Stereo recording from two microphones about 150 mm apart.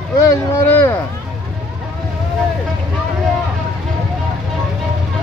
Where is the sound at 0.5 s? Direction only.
15° left (ahead or behind).